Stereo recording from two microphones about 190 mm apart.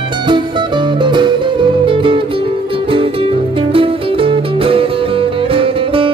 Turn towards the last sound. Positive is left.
turn(degrees=-30)  # may be behind; listen again after turning